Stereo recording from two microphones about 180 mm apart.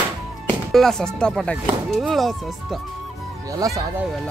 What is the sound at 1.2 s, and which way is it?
Speech, 5° left (ahead or behind).